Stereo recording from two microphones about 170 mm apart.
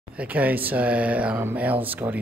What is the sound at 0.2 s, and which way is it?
Speech, 10° right (ahead or behind).